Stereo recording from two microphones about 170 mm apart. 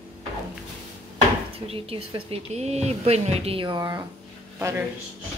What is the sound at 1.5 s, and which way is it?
Speech, 35° right (ahead or behind).